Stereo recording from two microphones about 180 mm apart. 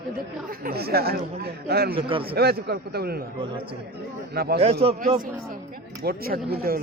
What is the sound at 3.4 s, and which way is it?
Speech, 30° right (ahead or behind).